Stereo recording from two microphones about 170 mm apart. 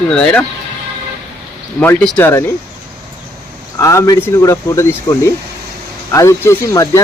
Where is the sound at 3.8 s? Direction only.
20° left (ahead or behind).